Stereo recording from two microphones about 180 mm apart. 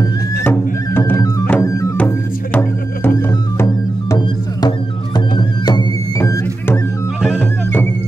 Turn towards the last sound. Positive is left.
turn(degrees=10)  # may be behind; listen again after turning